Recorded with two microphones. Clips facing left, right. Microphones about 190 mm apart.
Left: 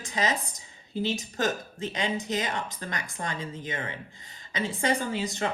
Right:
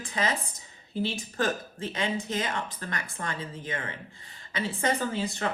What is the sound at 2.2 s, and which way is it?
Speech, 15° left (ahead or behind).